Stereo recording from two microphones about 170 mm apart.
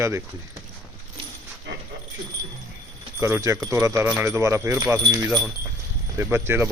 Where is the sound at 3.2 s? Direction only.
15° right (ahead or behind).